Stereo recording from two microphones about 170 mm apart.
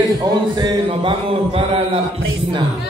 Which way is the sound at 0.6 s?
30° right (ahead or behind).